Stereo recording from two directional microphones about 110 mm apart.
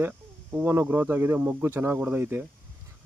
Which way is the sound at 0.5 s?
20° right (ahead or behind).